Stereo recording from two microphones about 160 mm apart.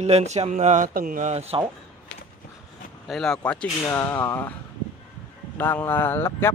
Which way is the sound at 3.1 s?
5° left (ahead or behind).